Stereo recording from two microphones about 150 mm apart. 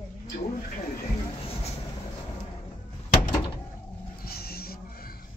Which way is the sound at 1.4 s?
45° left (ahead or behind).